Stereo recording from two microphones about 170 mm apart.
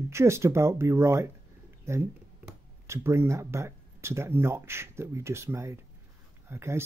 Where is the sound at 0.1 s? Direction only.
15° right (ahead or behind).